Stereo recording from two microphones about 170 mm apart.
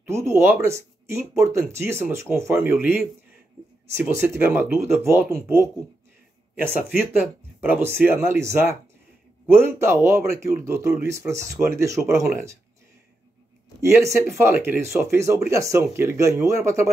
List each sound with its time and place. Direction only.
0.0 s speech: 15° right (ahead or behind)
7.6 s speech: 10° right (ahead or behind)
14.0 s speech: centre (ahead or behind)
14.4 s speech: 15° right (ahead or behind)